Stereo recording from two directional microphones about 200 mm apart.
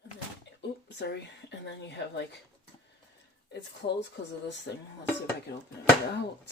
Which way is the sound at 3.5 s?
60° left (ahead or behind).